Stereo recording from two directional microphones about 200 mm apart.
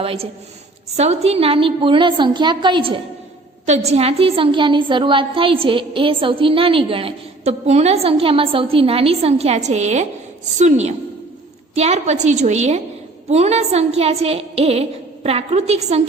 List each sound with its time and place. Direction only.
0.0 s a woman's voice: 30° right (ahead or behind)